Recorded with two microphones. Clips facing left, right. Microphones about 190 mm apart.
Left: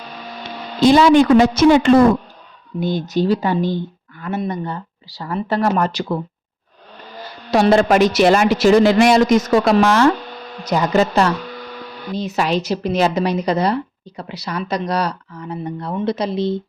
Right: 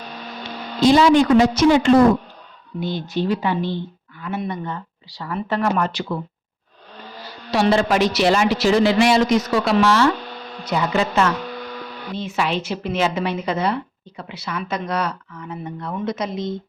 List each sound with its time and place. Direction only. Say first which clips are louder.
0.9 s a woman's voice: left 3 dB; 55° left (ahead or behind)
2.8 s a woman's voice: left 5 dB; 45° left (ahead or behind)
7.5 s a woman's voice: left 4 dB; 45° left (ahead or behind); by 16.6 s 30° left (ahead or behind)